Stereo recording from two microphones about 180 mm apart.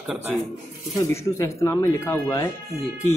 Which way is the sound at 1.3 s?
15° left (ahead or behind).